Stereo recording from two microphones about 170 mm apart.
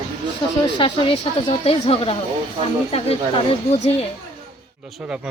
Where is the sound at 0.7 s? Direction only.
30° left (ahead or behind).